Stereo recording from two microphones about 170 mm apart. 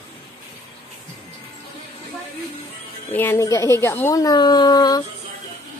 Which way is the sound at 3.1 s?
15° left (ahead or behind).